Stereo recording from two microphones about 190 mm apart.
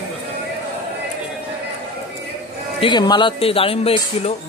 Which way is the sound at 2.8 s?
25° left (ahead or behind).